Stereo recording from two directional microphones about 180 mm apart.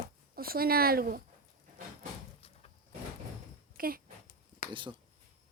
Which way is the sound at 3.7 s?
55° right (ahead or behind).